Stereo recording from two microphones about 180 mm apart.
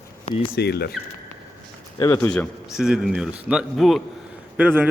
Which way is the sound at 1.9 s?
20° left (ahead or behind).